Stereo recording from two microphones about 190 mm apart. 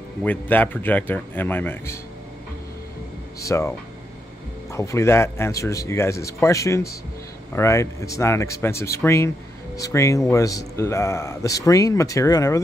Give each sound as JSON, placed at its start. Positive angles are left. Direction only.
{"t": 0.2, "sound": "speech", "side_deg": 10}
{"t": 3.3, "sound": "speech", "side_deg": 15}
{"t": 4.7, "sound": "speech", "side_deg": 15}